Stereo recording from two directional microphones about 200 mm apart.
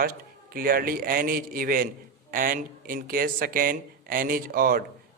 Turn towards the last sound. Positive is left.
turn(degrees=-45)  # may be behind; listen again after turning